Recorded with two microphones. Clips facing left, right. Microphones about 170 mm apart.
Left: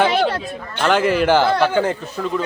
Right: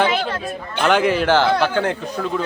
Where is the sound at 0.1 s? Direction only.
35° left (ahead or behind).